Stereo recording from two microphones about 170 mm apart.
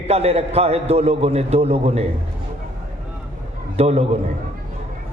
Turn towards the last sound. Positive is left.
turn(degrees=-35)  # may be behind; listen again after turning